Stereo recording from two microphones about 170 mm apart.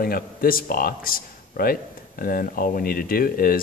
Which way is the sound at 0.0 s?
60° left (ahead or behind).